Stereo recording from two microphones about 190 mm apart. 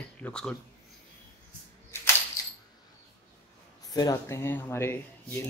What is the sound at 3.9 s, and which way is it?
Speech, 15° left (ahead or behind).